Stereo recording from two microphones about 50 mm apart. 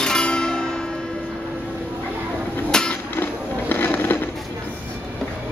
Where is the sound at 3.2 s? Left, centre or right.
Left.